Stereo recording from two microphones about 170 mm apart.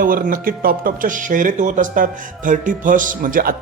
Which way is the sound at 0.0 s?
55° right (ahead or behind).